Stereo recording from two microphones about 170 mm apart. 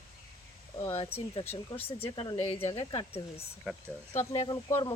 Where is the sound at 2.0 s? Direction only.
25° left (ahead or behind).